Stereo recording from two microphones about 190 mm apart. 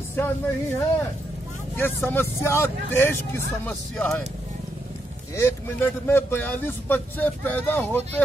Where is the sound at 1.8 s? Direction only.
10° left (ahead or behind).